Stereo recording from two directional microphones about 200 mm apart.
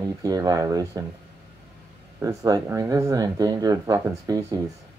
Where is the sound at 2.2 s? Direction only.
15° right (ahead or behind).